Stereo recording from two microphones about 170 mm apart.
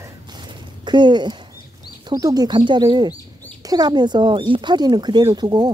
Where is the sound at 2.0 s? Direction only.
20° right (ahead or behind).